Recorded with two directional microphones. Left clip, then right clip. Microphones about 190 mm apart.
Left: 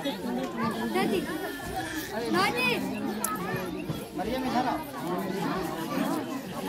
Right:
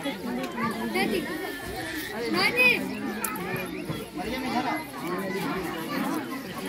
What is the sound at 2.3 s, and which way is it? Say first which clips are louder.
Speech: right 5 dB; 15° right (ahead or behind).